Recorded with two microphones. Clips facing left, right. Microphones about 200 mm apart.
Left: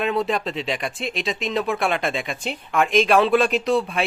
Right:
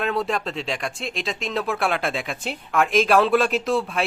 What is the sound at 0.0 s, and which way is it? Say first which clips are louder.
Speech: left 2 dB; centre (ahead or behind).